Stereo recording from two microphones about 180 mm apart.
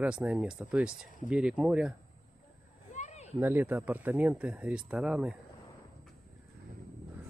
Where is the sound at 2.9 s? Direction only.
40° left (ahead or behind).